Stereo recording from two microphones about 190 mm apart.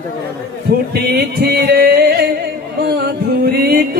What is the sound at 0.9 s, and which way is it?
Music, 55° right (ahead or behind).